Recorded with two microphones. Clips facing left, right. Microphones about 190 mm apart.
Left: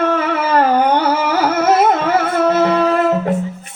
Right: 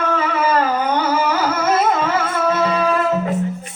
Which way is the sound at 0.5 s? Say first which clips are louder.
Left 5 dB; 60° left (ahead or behind).